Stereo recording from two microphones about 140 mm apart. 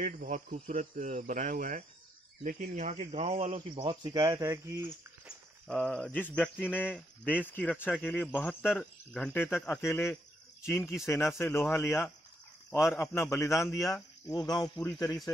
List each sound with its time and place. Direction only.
0.0 s speech: 75° right (ahead or behind)
2.6 s speech: 55° right (ahead or behind)
3.6 s speech: 40° right (ahead or behind); by 5.3 s 15° right (ahead or behind)
5.7 s speech: 5° left (ahead or behind); by 14.7 s 30° left (ahead or behind)
14.8 s speech: 20° left (ahead or behind)